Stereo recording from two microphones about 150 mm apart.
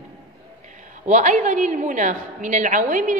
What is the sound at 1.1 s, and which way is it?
A woman's voice, 60° right (ahead or behind).